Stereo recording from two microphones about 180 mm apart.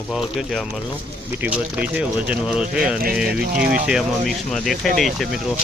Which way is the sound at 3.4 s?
60° right (ahead or behind).